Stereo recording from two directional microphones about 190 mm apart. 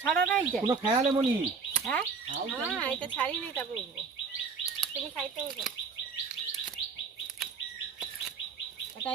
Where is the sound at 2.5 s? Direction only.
5° right (ahead or behind).